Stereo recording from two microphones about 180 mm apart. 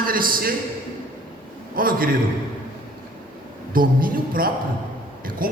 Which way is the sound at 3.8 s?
50° right (ahead or behind).